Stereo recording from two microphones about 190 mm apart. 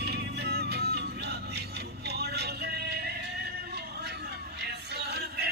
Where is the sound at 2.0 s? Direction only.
60° right (ahead or behind).